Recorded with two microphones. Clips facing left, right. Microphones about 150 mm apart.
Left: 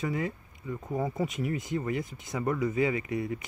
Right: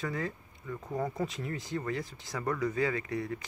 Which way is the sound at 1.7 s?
20° left (ahead or behind).